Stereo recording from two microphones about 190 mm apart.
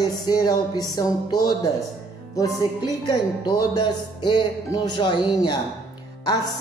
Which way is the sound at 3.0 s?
20° left (ahead or behind).